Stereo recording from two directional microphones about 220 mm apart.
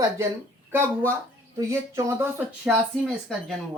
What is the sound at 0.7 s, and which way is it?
Speech, 10° right (ahead or behind).